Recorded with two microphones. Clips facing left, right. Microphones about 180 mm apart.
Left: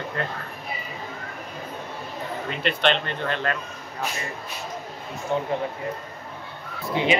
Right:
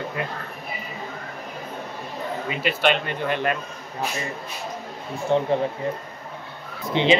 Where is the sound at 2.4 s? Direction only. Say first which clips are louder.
Right 1 dB; 5° right (ahead or behind).